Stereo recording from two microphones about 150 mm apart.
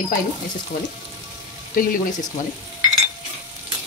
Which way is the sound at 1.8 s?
70° left (ahead or behind).